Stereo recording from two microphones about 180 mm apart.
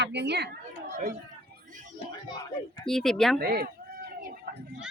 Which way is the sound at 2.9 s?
Centre (ahead or behind).